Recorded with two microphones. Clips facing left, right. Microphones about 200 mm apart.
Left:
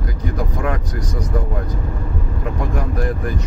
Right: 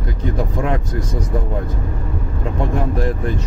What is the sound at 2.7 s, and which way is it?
Vehicle, 25° right (ahead or behind).